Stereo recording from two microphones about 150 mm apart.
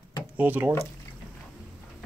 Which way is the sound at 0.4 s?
10° right (ahead or behind).